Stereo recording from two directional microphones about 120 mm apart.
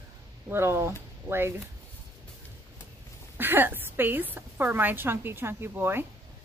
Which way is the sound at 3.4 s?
15° right (ahead or behind).